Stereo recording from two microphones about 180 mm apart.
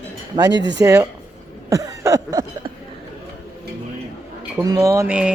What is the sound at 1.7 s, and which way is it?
Cough, 20° right (ahead or behind).